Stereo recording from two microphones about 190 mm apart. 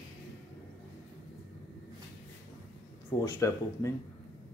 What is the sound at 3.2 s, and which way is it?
Speech, 15° left (ahead or behind).